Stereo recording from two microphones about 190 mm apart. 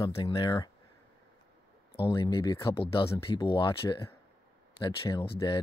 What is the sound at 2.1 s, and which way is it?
Speech, 25° left (ahead or behind).